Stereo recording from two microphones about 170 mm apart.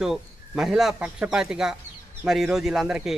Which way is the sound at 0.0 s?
Centre (ahead or behind).